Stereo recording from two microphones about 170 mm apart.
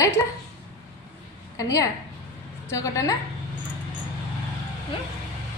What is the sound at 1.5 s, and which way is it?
A woman's voice, 20° left (ahead or behind).